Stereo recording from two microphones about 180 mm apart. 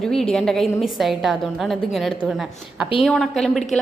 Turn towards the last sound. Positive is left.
turn(degrees=0)  # may be behind; listen again after turning